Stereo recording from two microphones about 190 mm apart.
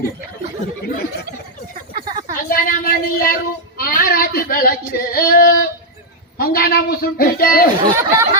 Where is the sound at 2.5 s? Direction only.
50° left (ahead or behind).